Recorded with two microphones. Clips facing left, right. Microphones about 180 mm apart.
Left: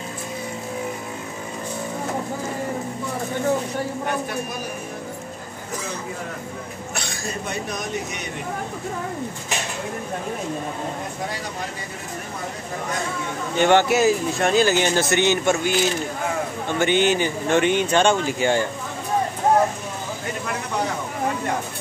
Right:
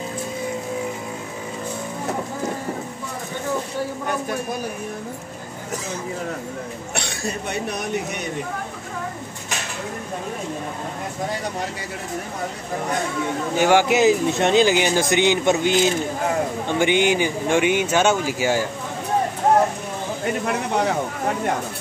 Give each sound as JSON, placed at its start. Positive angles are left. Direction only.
{"t": 13.6, "sound": "speech", "side_deg": -10}